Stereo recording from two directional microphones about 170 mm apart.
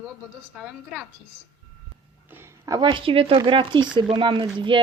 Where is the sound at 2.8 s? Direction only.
30° right (ahead or behind).